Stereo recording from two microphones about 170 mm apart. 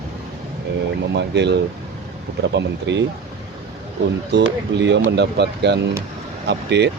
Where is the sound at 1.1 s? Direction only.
85° right.